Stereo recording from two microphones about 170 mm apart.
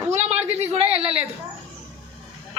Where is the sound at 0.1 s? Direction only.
40° right (ahead or behind).